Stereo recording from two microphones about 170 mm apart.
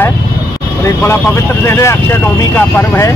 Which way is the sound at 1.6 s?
15° left (ahead or behind).